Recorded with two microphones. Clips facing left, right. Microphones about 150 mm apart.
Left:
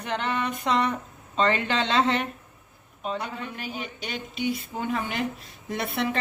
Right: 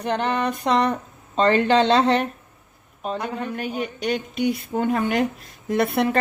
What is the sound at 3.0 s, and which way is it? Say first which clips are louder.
A woman's voice: right 4 dB; 45° right (ahead or behind).